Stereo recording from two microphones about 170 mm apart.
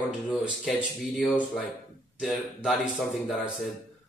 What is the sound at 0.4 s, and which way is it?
Speech, 5° right (ahead or behind).